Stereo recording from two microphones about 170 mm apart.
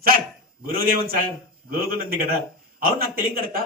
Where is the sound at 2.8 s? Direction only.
60° right (ahead or behind).